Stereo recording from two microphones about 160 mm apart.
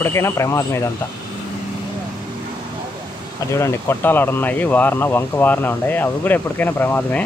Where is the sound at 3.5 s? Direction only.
15° left (ahead or behind).